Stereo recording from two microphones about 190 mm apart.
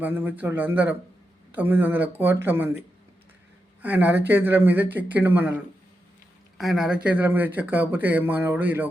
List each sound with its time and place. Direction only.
0.0 s speech: 10° right (ahead or behind)
3.8 s speech: 10° right (ahead or behind)